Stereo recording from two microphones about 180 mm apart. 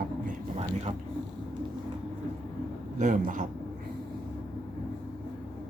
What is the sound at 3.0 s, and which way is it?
Speech, 45° right (ahead or behind).